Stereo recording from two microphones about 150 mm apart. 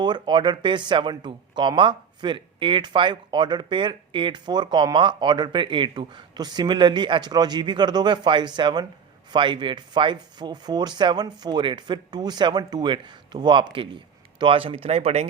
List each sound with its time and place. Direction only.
0.0 s speech: 30° right (ahead or behind); by 15.3 s 45° right (ahead or behind)